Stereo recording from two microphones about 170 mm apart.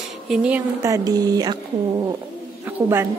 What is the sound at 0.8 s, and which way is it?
Speech, 20° right (ahead or behind).